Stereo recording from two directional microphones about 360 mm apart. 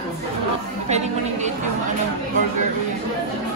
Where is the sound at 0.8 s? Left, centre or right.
Centre.